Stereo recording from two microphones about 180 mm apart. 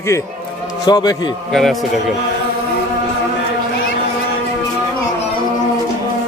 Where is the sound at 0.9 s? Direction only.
20° left (ahead or behind).